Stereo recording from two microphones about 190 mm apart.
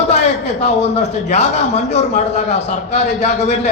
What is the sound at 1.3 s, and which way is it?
A man's voice, 35° left (ahead or behind).